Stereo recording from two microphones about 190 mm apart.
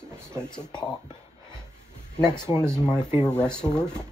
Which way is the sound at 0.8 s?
20° left (ahead or behind).